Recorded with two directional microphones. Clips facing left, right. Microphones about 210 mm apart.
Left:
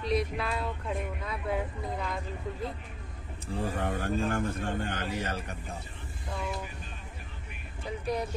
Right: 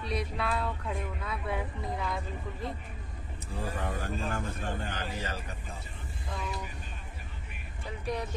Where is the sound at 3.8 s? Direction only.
50° left (ahead or behind).